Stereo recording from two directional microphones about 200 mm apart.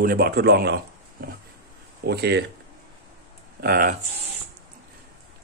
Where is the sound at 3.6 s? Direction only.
45° right (ahead or behind).